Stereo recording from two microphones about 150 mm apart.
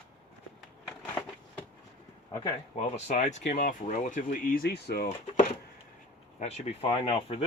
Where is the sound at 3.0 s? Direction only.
50° left (ahead or behind); by 5.1 s 90° left.